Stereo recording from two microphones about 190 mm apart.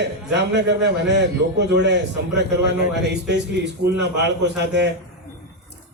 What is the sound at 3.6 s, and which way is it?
A man's voice, 65° right (ahead or behind).